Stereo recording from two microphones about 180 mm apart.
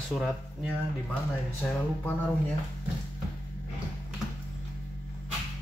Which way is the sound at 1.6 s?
10° left (ahead or behind).